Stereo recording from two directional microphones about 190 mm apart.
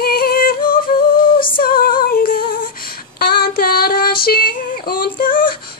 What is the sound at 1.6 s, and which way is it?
Female singing, 50° left (ahead or behind).